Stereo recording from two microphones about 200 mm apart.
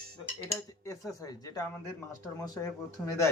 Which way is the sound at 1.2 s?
15° left (ahead or behind).